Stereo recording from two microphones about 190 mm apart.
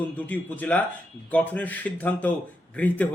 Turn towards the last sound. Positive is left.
turn(degrees=10)  # may be behind; listen again after turning